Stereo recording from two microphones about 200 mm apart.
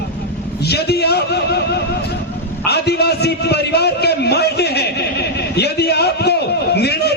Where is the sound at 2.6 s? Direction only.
55° left (ahead or behind).